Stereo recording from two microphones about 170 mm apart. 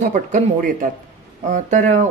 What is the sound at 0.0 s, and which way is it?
Speech, 50° right (ahead or behind).